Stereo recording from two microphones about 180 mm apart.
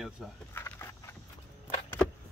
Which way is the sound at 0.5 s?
15° left (ahead or behind).